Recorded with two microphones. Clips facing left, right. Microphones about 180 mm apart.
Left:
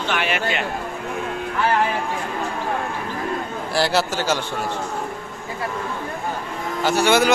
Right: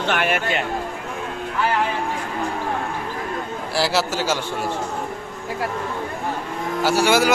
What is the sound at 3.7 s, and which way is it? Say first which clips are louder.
Speech: left 1 dB; 5° right (ahead or behind).